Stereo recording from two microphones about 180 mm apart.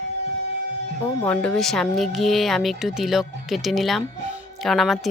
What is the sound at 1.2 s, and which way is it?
A woman's voice, 10° left (ahead or behind).